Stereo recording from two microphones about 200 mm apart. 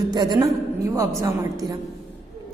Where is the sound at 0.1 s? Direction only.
20° right (ahead or behind).